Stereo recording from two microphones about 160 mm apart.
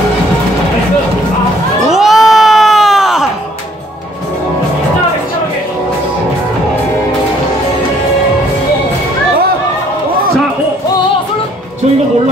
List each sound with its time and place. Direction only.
1.9 s crowd: centre (ahead or behind)